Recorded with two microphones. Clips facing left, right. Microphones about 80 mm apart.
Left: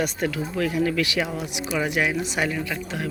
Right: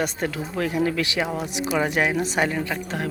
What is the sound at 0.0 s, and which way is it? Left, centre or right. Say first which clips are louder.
Speech: left 1 dB; right.